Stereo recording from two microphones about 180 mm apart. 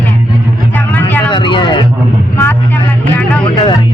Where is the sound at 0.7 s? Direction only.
10° left (ahead or behind).